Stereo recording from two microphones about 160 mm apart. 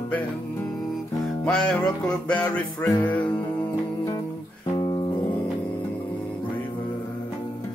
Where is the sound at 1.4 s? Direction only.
5° left (ahead or behind).